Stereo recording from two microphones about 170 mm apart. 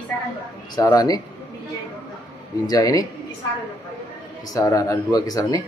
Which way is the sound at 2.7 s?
20° left (ahead or behind).